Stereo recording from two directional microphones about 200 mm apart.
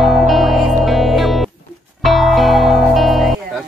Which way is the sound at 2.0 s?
Centre (ahead or behind).